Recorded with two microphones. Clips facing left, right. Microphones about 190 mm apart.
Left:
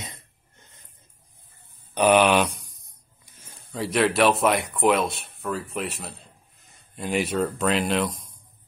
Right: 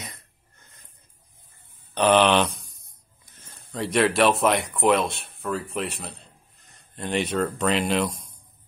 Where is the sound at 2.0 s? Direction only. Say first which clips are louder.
Even; 10° left (ahead or behind).